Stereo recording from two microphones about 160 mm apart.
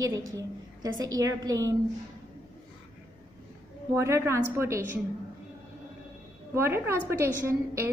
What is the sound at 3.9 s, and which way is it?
Speech, 15° right (ahead or behind).